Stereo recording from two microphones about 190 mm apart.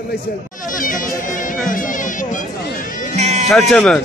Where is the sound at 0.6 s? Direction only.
45° left (ahead or behind).